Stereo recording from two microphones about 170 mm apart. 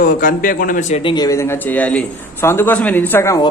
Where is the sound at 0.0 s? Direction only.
55° left (ahead or behind).